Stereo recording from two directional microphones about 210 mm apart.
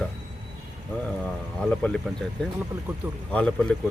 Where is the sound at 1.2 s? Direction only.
5° left (ahead or behind).